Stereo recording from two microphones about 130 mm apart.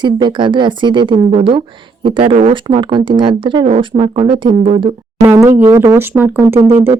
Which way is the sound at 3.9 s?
50° right (ahead or behind).